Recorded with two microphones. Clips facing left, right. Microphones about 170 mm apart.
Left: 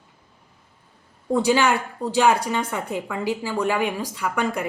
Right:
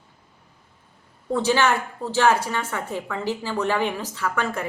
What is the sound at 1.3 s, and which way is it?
A woman's voice, 10° left (ahead or behind).